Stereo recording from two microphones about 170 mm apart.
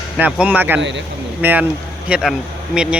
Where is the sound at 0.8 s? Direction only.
90° right.